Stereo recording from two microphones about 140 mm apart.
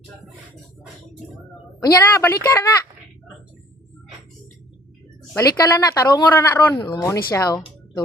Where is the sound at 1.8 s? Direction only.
25° left (ahead or behind).